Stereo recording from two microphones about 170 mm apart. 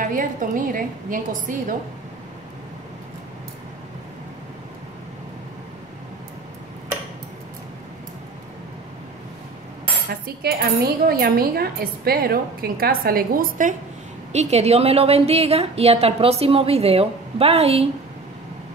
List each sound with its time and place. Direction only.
0.0 s a woman's voice: 50° right (ahead or behind)
10.0 s speech: 65° right (ahead or behind)
14.3 s a woman's voice: 40° right (ahead or behind)